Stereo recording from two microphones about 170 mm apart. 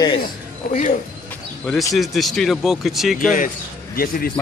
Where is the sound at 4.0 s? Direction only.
60° left (ahead or behind).